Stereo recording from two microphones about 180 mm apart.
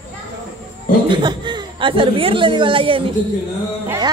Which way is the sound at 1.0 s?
25° right (ahead or behind).